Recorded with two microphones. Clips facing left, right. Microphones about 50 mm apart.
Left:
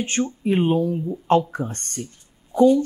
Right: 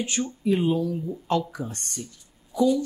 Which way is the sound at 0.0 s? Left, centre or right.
Left.